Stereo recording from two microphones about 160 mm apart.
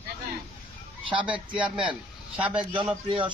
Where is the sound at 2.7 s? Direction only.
30° right (ahead or behind).